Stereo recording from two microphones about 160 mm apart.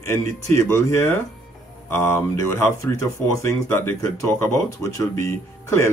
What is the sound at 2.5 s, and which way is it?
Speech, 20° left (ahead or behind).